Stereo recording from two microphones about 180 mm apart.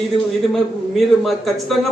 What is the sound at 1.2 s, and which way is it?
Speech, centre (ahead or behind).